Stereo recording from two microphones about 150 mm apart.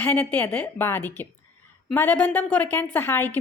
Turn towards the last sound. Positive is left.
turn(degrees=15)  # may be behind; listen again after turning